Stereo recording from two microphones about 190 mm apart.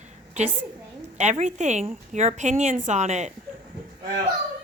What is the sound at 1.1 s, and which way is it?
A woman's voice, 40° right (ahead or behind).